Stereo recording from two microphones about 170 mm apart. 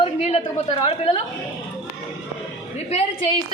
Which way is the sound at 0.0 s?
40° left (ahead or behind).